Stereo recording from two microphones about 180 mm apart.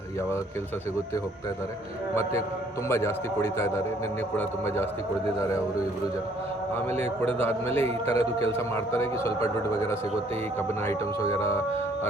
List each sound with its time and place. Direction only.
2.9 s speech: 15° left (ahead or behind)
7.0 s speech: 10° left (ahead or behind)
8.1 s speech: 35° right (ahead or behind)
8.5 s speech: 15° left (ahead or behind)